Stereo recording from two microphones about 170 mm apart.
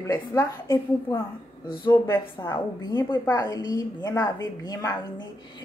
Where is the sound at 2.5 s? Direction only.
25° left (ahead or behind).